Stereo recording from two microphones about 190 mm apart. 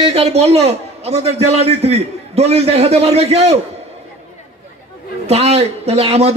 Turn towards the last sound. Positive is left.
turn(degrees=-35)  # may be behind; listen again after turning